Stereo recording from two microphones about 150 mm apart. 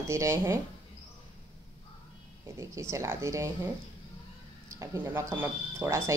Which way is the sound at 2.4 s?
20° right (ahead or behind).